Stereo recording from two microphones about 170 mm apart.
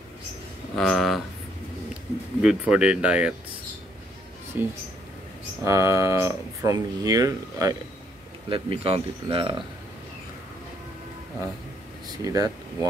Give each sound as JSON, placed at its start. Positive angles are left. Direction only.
{"t": 0.7, "sound": "speech", "side_deg": 0}
{"t": 2.4, "sound": "speech", "side_deg": -5}
{"t": 4.6, "sound": "speech", "side_deg": -10}
{"t": 8.5, "sound": "speech", "side_deg": -30}
{"t": 12.1, "sound": "speech", "side_deg": -20}